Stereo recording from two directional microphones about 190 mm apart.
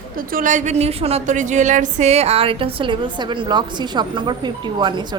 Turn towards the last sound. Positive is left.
turn(degrees=-25)  # may be behind; listen again after turning